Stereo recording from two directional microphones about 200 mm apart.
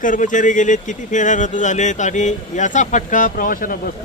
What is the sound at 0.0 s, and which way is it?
A man's voice, 40° left (ahead or behind).